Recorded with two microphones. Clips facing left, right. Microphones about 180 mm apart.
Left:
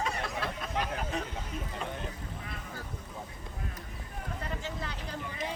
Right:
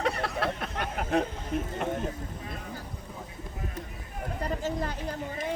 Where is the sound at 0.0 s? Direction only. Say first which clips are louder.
Right 5 dB; 65° right (ahead or behind).